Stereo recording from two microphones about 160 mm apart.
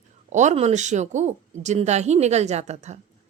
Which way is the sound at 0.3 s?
50° right (ahead or behind).